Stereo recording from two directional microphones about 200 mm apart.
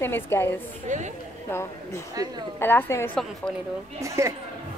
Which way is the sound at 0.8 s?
35° right (ahead or behind).